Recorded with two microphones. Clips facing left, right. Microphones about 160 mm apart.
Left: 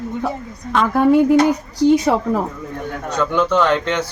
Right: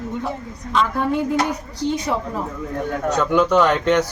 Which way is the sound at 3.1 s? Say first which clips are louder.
Even; 10° right (ahead or behind).